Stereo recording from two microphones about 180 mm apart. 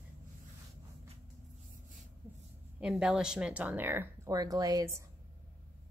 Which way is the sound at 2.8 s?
5° right (ahead or behind).